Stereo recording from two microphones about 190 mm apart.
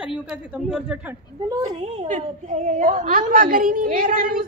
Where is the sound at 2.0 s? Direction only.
40° right (ahead or behind).